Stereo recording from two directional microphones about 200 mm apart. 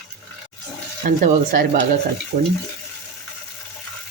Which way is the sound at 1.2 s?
45° right (ahead or behind).